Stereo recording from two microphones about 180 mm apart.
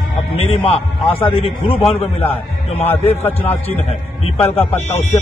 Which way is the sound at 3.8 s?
30° left (ahead or behind).